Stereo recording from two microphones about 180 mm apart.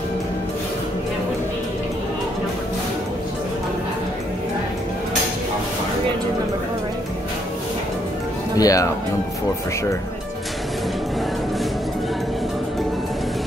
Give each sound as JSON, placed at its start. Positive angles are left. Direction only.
{"t": 8.5, "sound": "speech", "side_deg": 20}